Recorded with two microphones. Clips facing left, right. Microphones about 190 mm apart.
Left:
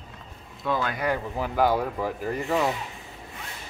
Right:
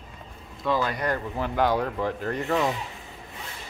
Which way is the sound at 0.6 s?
Centre (ahead or behind).